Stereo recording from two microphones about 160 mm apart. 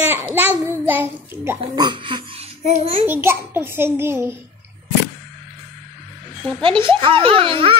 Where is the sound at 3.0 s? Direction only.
15° right (ahead or behind).